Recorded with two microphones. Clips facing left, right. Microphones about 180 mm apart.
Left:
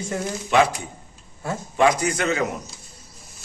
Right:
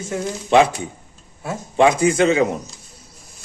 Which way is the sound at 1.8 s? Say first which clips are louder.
Right 5 dB; 25° right (ahead or behind).